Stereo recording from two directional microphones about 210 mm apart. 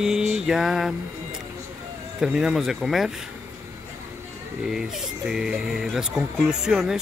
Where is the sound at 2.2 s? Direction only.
5° right (ahead or behind).